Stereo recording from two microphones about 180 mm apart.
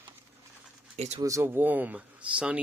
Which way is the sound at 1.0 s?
35° right (ahead or behind).